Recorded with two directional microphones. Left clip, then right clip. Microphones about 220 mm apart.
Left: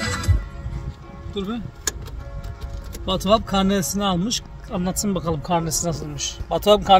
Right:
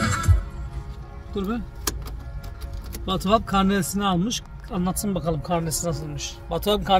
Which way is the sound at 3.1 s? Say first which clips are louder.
Left 2 dB; 10° left (ahead or behind).